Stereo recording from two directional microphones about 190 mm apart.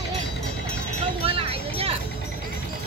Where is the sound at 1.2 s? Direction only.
30° right (ahead or behind).